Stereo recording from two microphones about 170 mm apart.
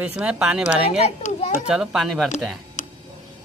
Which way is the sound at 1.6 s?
5° right (ahead or behind).